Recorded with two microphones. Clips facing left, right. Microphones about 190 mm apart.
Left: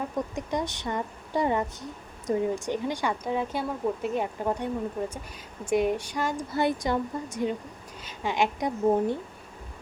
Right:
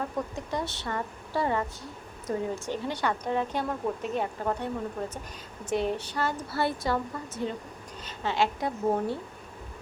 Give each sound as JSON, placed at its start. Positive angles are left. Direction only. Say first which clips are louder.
{"t": 0.3, "sound": "a woman's voice", "louder": "left 3 dB", "side_deg": 15}